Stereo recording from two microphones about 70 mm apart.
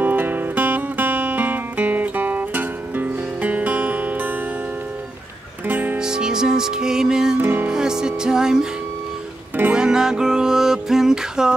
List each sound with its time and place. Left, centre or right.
0.0 s music: right
5.7 s music: right
5.9 s music: centre
7.3 s music: right
7.7 s music: centre
9.8 s music: centre